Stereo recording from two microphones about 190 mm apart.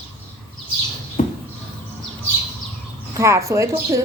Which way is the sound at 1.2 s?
40° left (ahead or behind).